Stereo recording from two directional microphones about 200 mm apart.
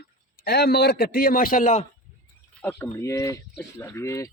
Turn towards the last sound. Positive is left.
turn(degrees=15)  # may be behind; listen again after turning